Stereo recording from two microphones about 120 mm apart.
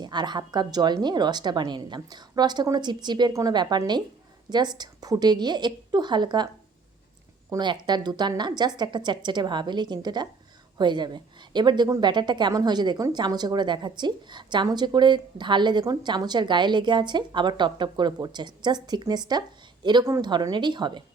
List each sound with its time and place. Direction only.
0.0 s a woman's voice: 35° right (ahead or behind)
7.6 s a woman's voice: 40° right (ahead or behind)